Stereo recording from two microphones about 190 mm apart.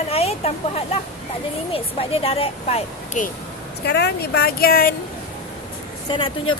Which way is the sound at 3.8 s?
60° left (ahead or behind).